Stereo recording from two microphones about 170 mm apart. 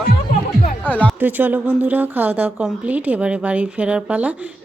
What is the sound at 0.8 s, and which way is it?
Music, 10° left (ahead or behind).